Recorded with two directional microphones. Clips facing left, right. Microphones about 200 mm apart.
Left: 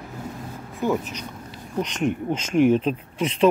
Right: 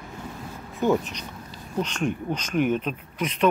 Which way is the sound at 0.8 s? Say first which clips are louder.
Right 2 dB; centre (ahead or behind).